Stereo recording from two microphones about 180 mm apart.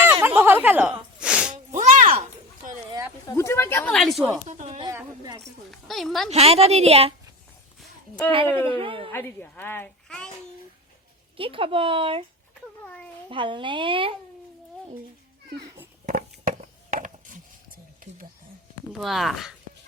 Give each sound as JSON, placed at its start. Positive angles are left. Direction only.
{"t": 0.0, "sound": "a sound", "side_deg": -10}
{"t": 1.2, "sound": "sneeze", "side_deg": -5}
{"t": 1.7, "sound": "music", "side_deg": -45}
{"t": 3.2, "sound": "a woman's voice", "side_deg": 15}
{"t": 4.4, "sound": "speech", "side_deg": -45}
{"t": 5.7, "sound": "speech", "side_deg": 0}
{"t": 6.3, "sound": "a woman's voice", "side_deg": -35}
{"t": 8.6, "sound": "a woman's voice", "side_deg": -30}
{"t": 9.1, "sound": "a woman's voice", "side_deg": 10}
{"t": 11.3, "sound": "a woman's voice", "side_deg": -30}
{"t": 12.8, "sound": "a child's voice", "side_deg": 5}
{"t": 13.2, "sound": "a woman's voice", "side_deg": -25}
{"t": 16.9, "sound": "chopping", "side_deg": -50}
{"t": 18.9, "sound": "speech", "side_deg": 0}